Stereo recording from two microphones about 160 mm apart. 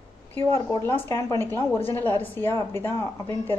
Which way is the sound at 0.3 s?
15° left (ahead or behind).